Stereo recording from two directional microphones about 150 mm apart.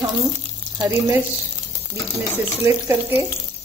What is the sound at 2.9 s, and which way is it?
Speech, 15° right (ahead or behind).